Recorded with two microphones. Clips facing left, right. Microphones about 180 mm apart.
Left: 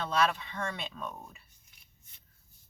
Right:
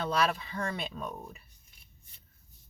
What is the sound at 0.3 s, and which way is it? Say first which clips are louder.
Speech: right 2 dB; 35° right (ahead or behind).